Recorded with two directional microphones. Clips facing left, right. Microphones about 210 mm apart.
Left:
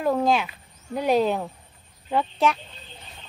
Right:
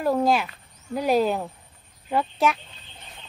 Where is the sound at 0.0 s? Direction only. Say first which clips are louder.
Even; 5° right (ahead or behind).